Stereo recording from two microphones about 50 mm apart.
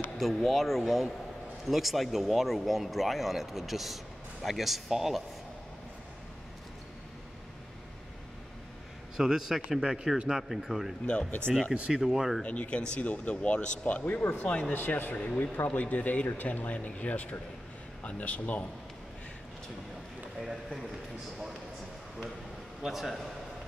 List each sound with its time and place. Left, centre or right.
0.2 s speech: centre
9.1 s a man's voice: centre
11.1 s speech: left
11.7 s speech: right
12.0 s speech: centre
12.4 s speech: left
14.7 s speech: left
15.1 s speech: left
20.3 s speech: centre
22.8 s speech: centre